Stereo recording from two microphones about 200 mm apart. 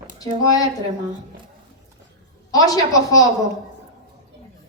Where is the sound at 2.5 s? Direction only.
20° left (ahead or behind).